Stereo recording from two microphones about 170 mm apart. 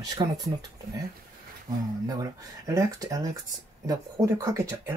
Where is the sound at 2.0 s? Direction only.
20° right (ahead or behind).